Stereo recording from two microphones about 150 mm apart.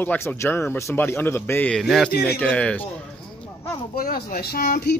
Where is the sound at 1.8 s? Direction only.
Centre (ahead or behind).